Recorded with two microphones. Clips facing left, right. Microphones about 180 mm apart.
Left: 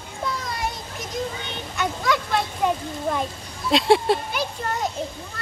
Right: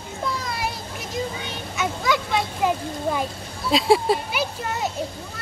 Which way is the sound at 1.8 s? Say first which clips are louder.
Even; centre (ahead or behind).